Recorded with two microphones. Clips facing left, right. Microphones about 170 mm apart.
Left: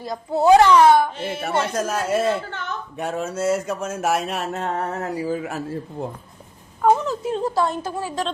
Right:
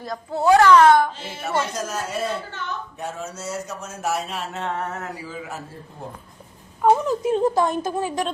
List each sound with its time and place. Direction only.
0.0 s speech: 15° left (ahead or behind)
1.1 s speech: 60° left (ahead or behind)
3.8 s speech: 70° left (ahead or behind); by 5.3 s 35° left (ahead or behind)
5.3 s speech: 50° left (ahead or behind)
6.8 s speech: 10° right (ahead or behind)